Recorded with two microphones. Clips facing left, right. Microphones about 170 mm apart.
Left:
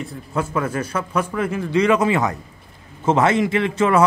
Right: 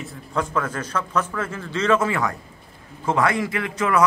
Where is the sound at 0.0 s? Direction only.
5° left (ahead or behind).